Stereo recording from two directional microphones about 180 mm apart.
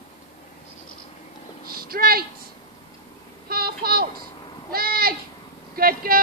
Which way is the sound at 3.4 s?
55° right (ahead or behind).